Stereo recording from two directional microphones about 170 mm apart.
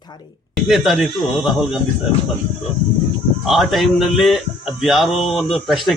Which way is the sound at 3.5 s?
Centre (ahead or behind).